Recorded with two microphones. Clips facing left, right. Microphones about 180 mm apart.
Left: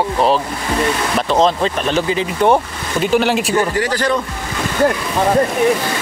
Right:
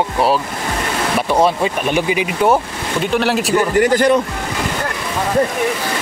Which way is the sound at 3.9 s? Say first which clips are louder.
Right 6 dB; 20° right (ahead or behind).